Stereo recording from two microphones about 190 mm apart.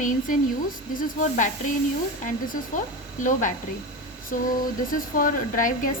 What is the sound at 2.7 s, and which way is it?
Speech, 40° left (ahead or behind).